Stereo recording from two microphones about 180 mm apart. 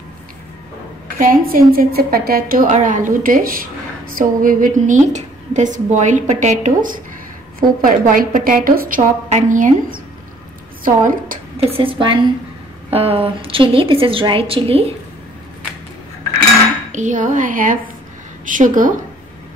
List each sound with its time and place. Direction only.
1.1 s a woman's voice: 50° right (ahead or behind)
11.6 s a woman's voice: 30° right (ahead or behind)
16.9 s a woman's voice: 45° right (ahead or behind)